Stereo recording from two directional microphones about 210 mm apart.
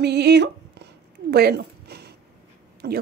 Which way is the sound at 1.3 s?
50° right (ahead or behind).